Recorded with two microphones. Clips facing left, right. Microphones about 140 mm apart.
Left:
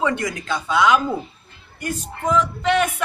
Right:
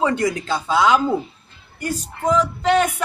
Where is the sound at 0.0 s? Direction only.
35° right (ahead or behind).